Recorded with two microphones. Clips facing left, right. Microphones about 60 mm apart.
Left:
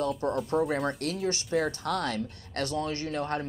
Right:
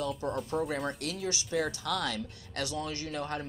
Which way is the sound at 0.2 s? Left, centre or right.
Left.